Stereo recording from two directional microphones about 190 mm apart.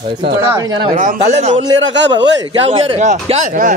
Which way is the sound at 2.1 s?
30° right (ahead or behind).